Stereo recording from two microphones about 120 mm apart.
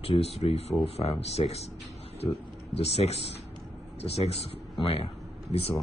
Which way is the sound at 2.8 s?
60° left (ahead or behind).